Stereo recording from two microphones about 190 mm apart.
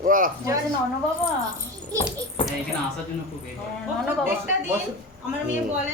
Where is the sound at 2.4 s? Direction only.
30° left (ahead or behind).